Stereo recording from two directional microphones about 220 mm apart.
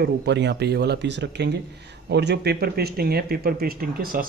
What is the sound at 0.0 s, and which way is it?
Speech, 50° right (ahead or behind).